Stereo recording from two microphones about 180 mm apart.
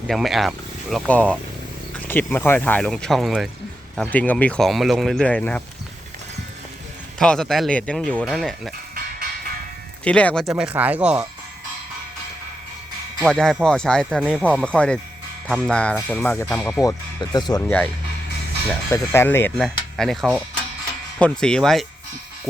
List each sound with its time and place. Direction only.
0.1 s speech: centre (ahead or behind)
7.2 s speech: 5° left (ahead or behind)
10.0 s speech: 5° left (ahead or behind)
10.6 s speech: 10° right (ahead or behind)
13.2 s speech: centre (ahead or behind)
16.8 s speech: 25° left (ahead or behind)
18.9 s speech: 15° left (ahead or behind)
19.5 s speech: centre (ahead or behind)